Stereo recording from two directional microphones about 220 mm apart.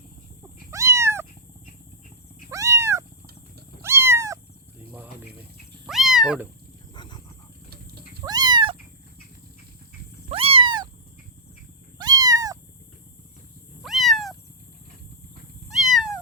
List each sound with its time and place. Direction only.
0.7 s cat: 15° right (ahead or behind)
2.5 s cat: 15° right (ahead or behind)
5.8 s cat: centre (ahead or behind)
6.9 s wild animals: 20° left (ahead or behind)
8.2 s cat: 20° right (ahead or behind)
10.3 s cat: 25° right (ahead or behind)
11.9 s cat: 15° right (ahead or behind)
13.8 s cat: centre (ahead or behind)
15.7 s cat: centre (ahead or behind)